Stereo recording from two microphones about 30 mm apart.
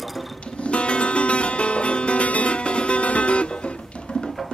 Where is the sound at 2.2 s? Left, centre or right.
Left.